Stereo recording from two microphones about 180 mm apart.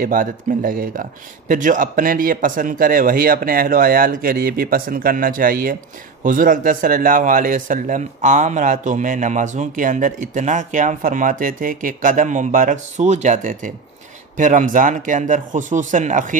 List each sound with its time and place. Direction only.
0.0 s a man's voice: 50° right (ahead or behind)